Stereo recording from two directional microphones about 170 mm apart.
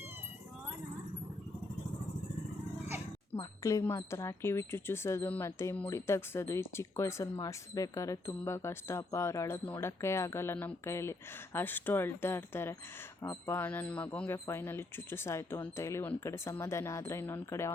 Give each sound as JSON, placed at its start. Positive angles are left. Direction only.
{"t": 3.6, "sound": "speech", "side_deg": 20}